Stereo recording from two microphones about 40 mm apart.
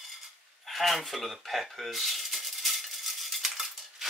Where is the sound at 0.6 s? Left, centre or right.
Centre.